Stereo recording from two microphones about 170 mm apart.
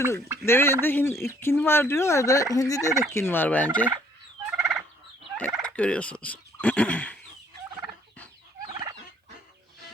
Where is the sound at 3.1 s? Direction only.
15° left (ahead or behind).